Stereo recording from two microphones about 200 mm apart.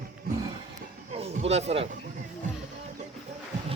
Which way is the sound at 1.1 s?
30° right (ahead or behind).